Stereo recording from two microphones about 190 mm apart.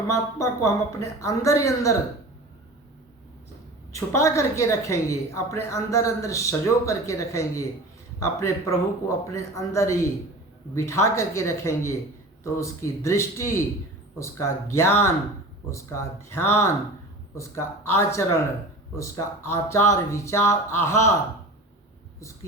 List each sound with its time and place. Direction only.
0.3 s speech: 15° left (ahead or behind)
3.9 s speech: 15° left (ahead or behind)